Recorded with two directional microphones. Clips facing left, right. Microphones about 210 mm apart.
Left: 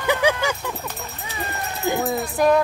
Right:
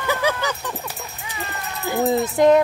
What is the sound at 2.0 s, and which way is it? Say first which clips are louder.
Speech: right 6 dB; 25° right (ahead or behind).